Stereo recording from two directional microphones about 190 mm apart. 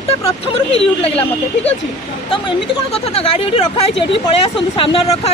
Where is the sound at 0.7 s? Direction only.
30° left (ahead or behind).